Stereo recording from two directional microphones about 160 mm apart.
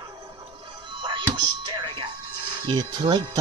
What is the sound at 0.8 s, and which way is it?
Music, 30° right (ahead or behind).